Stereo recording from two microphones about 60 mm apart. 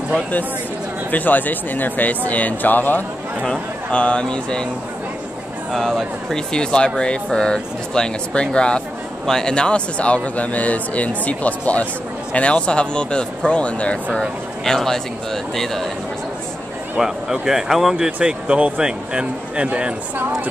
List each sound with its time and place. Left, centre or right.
1.1 s a man's voice: left
3.9 s speech: centre
5.7 s a man's voice: centre; by 13.9 s left
14.2 s a man's voice: centre
17.0 s speech: centre